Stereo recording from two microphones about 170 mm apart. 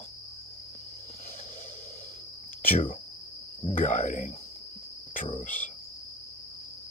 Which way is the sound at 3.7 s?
45° left (ahead or behind).